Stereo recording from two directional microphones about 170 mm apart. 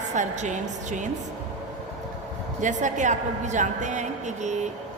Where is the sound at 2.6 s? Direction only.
45° right (ahead or behind).